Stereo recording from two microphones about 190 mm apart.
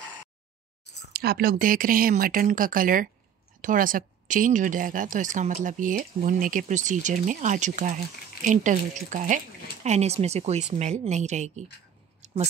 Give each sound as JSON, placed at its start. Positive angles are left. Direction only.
{"t": 1.1, "sound": "speech", "side_deg": -55}